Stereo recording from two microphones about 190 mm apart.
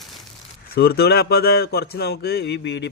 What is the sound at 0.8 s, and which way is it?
Speech, 55° left (ahead or behind).